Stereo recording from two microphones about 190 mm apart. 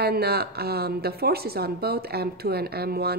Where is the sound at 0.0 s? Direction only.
55° right (ahead or behind).